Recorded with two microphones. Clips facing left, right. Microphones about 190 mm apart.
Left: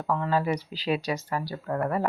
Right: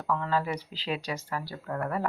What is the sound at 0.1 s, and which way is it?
Speech, 15° left (ahead or behind).